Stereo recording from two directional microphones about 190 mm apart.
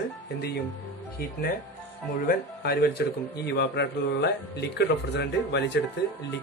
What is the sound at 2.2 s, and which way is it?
Speech, 55° left (ahead or behind).